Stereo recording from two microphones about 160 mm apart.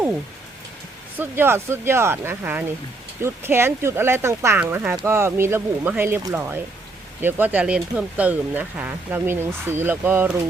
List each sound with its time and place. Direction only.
1.2 s speech: 15° right (ahead or behind)